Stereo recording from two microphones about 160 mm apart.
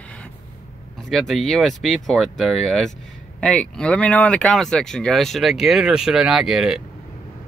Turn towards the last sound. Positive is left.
turn(degrees=-5)  # may be behind; listen again after turning